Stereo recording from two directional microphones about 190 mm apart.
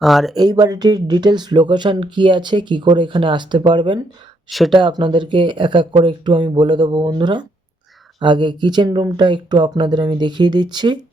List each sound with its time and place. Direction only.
0.0 s speech: centre (ahead or behind)
0.3 s speech: 20° right (ahead or behind)
4.4 s speech: centre (ahead or behind)
4.7 s speech: 25° right (ahead or behind)